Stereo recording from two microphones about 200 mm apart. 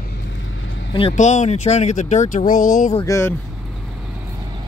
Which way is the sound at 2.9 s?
15° left (ahead or behind).